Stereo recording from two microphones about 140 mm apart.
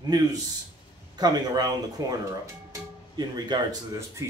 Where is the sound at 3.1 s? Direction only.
30° right (ahead or behind).